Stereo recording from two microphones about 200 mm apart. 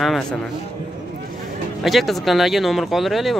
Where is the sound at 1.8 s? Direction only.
Centre (ahead or behind).